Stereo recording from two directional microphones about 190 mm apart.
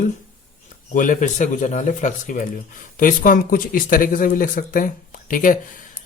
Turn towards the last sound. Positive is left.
turn(degrees=45)  # may be behind; listen again after turning